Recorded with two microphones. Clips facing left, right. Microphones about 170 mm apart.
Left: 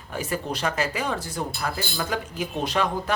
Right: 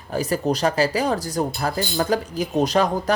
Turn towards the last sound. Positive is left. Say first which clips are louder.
# right 5 dB
turn(degrees=-40)  # may be behind; listen again after turning